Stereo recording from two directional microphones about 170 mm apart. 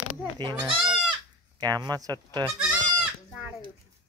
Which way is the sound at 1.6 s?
25° right (ahead or behind).